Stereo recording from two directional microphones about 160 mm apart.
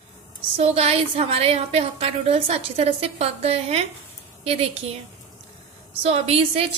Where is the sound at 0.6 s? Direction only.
40° right (ahead or behind).